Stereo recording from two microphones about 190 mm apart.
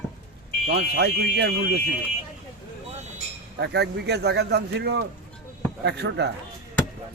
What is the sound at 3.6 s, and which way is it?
Speech, 60° right (ahead or behind).